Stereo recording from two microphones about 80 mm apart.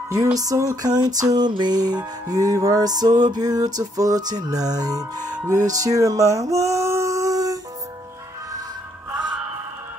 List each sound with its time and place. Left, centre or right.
0.1 s music: right